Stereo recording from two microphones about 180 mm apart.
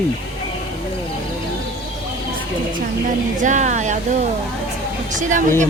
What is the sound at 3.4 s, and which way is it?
Speech, 40° right (ahead or behind).